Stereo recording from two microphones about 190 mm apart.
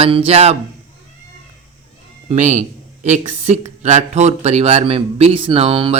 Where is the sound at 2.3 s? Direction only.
40° right (ahead or behind).